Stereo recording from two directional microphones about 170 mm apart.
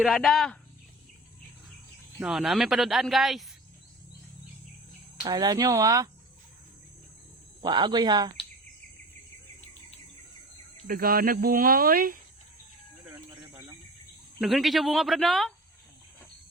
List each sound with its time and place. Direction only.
0.0 s speech: centre (ahead or behind)
2.2 s speech: centre (ahead or behind)
5.2 s speech: 25° right (ahead or behind)
7.6 s speech: 25° right (ahead or behind)
10.8 s speech: 55° right (ahead or behind)
13.1 s cricket: 15° right (ahead or behind)
14.4 s speech: centre (ahead or behind)